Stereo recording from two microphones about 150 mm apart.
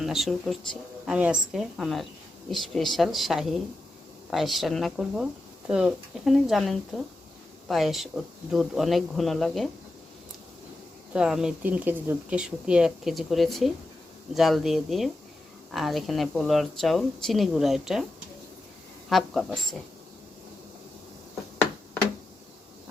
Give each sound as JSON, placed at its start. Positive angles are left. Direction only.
{"t": 0.0, "sound": "speech", "side_deg": 0}
{"t": 11.1, "sound": "speech", "side_deg": -5}
{"t": 19.0, "sound": "speech", "side_deg": 0}